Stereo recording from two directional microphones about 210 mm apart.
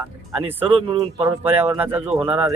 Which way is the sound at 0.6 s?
25° right (ahead or behind).